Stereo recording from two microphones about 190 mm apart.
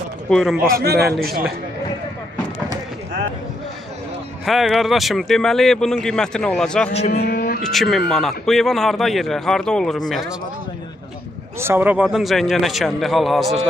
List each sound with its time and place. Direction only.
0.3 s speech: centre (ahead or behind)
0.7 s a man's voice: 55° right (ahead or behind)
4.5 s speech: centre (ahead or behind)
7.2 s a sound: 55° left (ahead or behind)
7.6 s speech: centre (ahead or behind)
11.6 s speech: 10° right (ahead or behind)